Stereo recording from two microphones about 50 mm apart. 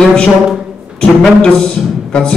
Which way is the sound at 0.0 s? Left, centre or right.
Centre.